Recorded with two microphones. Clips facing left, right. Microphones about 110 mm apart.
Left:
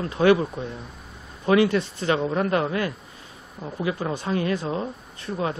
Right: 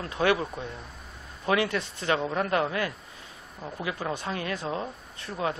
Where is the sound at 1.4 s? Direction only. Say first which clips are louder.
Left 7 dB; 25° left (ahead or behind).